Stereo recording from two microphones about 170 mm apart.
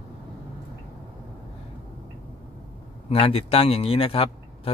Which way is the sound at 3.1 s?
35° left (ahead or behind).